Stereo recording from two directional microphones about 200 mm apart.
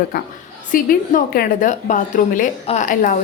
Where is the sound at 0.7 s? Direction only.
45° left (ahead or behind).